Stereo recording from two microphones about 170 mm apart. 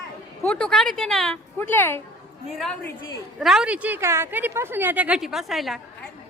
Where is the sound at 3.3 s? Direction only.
5° right (ahead or behind).